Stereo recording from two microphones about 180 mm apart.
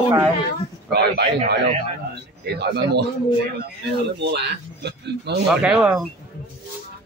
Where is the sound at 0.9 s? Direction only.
65° right (ahead or behind).